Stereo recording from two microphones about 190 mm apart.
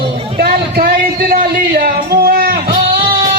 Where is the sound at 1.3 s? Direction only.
50° right (ahead or behind).